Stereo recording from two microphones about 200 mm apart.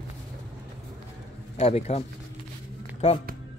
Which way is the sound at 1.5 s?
30° left (ahead or behind).